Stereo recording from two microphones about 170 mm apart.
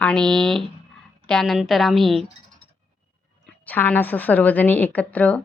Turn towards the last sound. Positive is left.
turn(degrees=10)  # may be behind; listen again after turning